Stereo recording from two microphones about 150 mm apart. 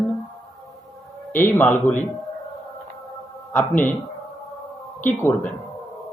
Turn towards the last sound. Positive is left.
turn(degrees=15)  # may be behind; listen again after turning